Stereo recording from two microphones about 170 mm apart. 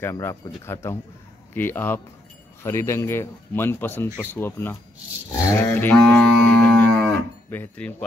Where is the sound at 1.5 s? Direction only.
10° left (ahead or behind).